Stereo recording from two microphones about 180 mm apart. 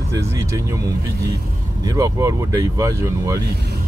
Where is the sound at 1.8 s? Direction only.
20° right (ahead or behind).